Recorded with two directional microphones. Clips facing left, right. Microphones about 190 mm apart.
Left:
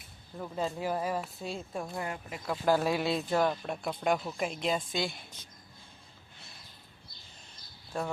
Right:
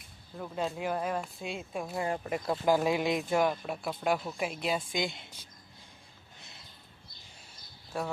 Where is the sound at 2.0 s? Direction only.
40° right (ahead or behind).